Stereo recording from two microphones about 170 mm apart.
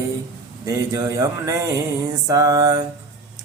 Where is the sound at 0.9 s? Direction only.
20° right (ahead or behind).